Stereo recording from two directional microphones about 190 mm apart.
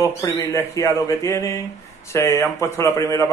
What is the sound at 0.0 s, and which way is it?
A man's voice, 15° left (ahead or behind).